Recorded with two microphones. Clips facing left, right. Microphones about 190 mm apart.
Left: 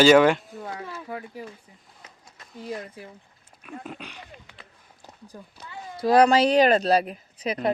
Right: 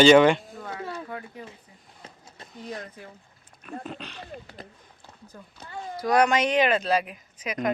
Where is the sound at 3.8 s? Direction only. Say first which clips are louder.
Right 1 dB; 10° left (ahead or behind).